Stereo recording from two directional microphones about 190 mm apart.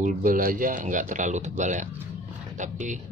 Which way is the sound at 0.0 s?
45° right (ahead or behind).